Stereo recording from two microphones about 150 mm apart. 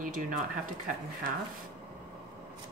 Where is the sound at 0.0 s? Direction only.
65° right (ahead or behind).